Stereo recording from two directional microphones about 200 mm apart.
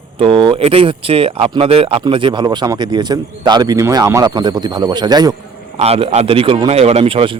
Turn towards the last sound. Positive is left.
turn(degrees=-25)  # may be behind; listen again after turning